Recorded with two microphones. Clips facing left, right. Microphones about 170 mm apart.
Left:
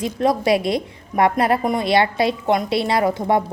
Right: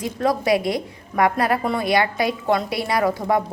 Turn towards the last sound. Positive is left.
turn(degrees=25)  # may be behind; listen again after turning